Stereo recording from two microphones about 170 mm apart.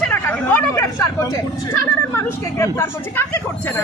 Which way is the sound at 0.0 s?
10° left (ahead or behind).